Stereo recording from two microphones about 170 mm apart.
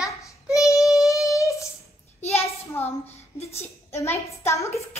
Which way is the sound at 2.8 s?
40° left (ahead or behind).